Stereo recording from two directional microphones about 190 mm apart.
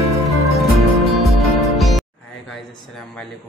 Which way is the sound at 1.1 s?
Centre (ahead or behind).